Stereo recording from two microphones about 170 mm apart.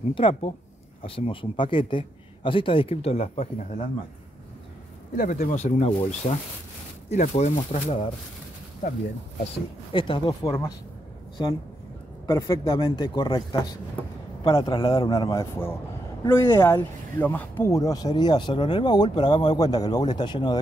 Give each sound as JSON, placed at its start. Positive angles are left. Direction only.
{"t": 0.1, "sound": "speech", "side_deg": 30}
{"t": 5.1, "sound": "speech", "side_deg": 50}
{"t": 9.9, "sound": "speech", "side_deg": 30}
{"t": 12.3, "sound": "speech", "side_deg": 20}